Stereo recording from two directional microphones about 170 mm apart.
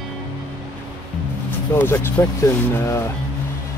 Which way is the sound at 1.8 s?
10° left (ahead or behind).